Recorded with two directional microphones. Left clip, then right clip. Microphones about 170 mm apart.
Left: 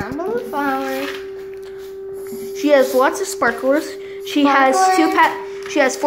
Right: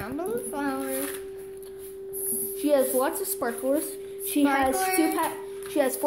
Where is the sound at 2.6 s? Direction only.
Centre (ahead or behind).